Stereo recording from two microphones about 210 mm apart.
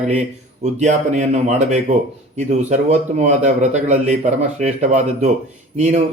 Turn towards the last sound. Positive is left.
turn(degrees=-35)  # may be behind; listen again after turning